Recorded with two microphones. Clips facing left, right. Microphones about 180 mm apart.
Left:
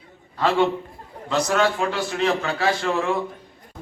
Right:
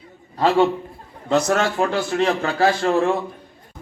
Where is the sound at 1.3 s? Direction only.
50° right (ahead or behind).